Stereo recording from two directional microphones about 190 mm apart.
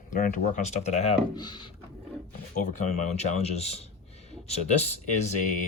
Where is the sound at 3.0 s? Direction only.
35° left (ahead or behind).